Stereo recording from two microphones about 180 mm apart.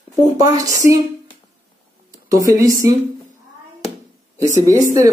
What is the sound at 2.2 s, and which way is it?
Speech, 20° right (ahead or behind).